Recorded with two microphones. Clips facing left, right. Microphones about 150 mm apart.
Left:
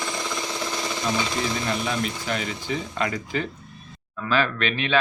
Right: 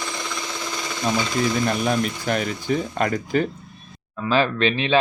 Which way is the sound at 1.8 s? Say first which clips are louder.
Right 5 dB; 50° right (ahead or behind).